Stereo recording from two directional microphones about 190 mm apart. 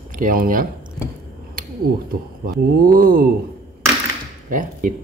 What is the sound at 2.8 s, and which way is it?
Speech, 50° right (ahead or behind).